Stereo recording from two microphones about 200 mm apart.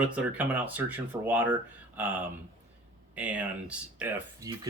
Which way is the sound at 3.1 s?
5° right (ahead or behind).